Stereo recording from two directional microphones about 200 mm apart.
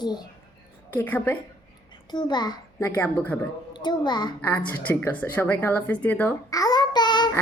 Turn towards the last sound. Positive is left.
turn(degrees=20)  # may be behind; listen again after turning